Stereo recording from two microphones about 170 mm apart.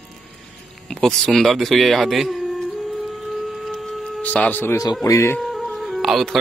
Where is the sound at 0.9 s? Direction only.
Centre (ahead or behind).